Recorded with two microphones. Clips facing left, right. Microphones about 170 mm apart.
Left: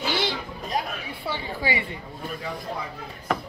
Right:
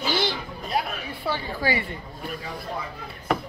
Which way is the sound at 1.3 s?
20° left (ahead or behind).